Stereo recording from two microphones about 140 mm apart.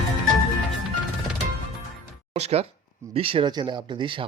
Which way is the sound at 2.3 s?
50° right (ahead or behind).